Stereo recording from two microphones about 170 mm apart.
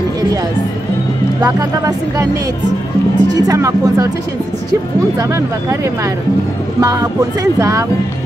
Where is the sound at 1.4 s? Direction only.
20° right (ahead or behind).